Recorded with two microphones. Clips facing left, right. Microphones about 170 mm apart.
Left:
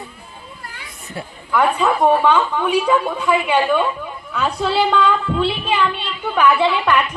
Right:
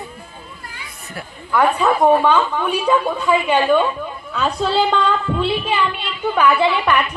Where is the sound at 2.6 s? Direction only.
10° left (ahead or behind).